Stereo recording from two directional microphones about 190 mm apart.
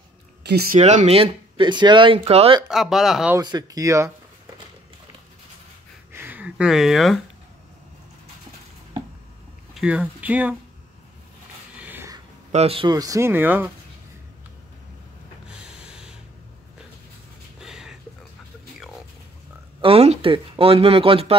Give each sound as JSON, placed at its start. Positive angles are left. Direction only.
{"t": 0.4, "sound": "speech", "side_deg": -60}
{"t": 0.7, "sound": "speech", "side_deg": -35}
{"t": 2.7, "sound": "speech", "side_deg": 0}
{"t": 3.3, "sound": "speech", "side_deg": -20}
{"t": 6.1, "sound": "speech", "side_deg": -10}
{"t": 9.8, "sound": "speech", "side_deg": -5}
{"t": 11.8, "sound": "a sound", "side_deg": -10}
{"t": 12.5, "sound": "speech", "side_deg": -30}
{"t": 15.4, "sound": "a sound", "side_deg": -5}
{"t": 17.6, "sound": "a sound", "side_deg": -5}
{"t": 19.8, "sound": "speech", "side_deg": -30}